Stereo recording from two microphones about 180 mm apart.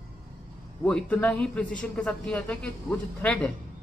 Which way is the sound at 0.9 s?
5° left (ahead or behind).